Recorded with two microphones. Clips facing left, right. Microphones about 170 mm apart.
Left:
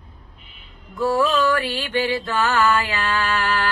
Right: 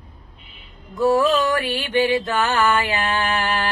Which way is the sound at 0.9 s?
20° right (ahead or behind).